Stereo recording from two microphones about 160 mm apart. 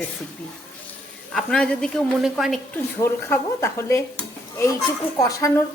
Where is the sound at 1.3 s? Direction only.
5° left (ahead or behind).